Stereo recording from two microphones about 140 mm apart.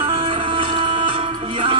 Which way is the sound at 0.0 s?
40° right (ahead or behind).